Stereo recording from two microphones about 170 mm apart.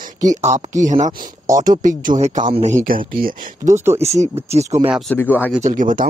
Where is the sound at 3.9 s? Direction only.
40° right (ahead or behind).